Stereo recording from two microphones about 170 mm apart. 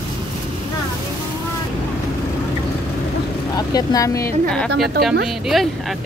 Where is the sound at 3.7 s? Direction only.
20° left (ahead or behind).